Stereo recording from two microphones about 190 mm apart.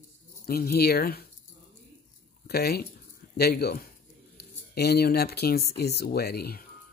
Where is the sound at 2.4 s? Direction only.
55° left (ahead or behind).